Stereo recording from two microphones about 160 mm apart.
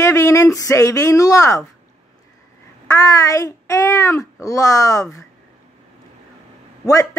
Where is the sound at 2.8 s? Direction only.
20° left (ahead or behind).